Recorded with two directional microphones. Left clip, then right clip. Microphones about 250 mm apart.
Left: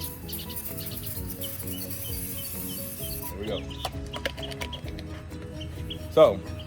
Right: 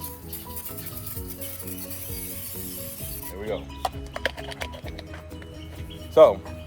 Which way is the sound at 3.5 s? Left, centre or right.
Right.